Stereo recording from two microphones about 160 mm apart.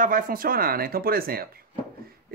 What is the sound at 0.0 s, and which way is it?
Speech, 60° right (ahead or behind).